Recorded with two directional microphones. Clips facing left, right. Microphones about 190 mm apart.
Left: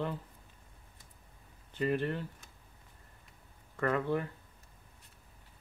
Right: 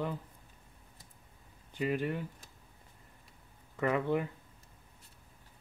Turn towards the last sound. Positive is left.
turn(degrees=-15)  # may be behind; listen again after turning